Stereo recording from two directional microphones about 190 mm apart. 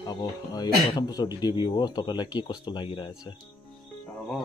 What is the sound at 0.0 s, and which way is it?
Speech, 20° left (ahead or behind).